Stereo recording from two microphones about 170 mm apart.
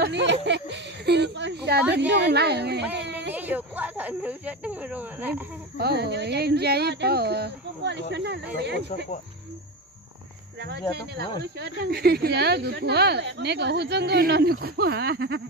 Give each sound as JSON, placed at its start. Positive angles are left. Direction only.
{"t": 0.0, "sound": "speech", "side_deg": -90}
{"t": 2.0, "sound": "speech", "side_deg": -90}
{"t": 3.3, "sound": "speech", "side_deg": -10}
{"t": 5.8, "sound": "speech", "side_deg": -75}
{"t": 10.6, "sound": "speech", "side_deg": -85}